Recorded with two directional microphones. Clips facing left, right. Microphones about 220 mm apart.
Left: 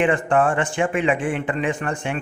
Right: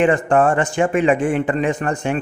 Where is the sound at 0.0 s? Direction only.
40° right (ahead or behind).